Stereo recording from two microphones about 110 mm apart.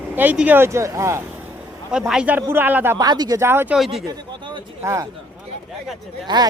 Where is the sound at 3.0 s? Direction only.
40° right (ahead or behind).